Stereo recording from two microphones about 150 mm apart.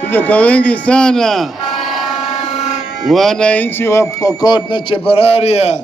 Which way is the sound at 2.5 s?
45° left (ahead or behind).